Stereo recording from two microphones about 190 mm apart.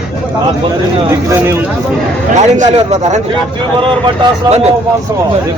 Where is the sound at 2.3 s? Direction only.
40° right (ahead or behind).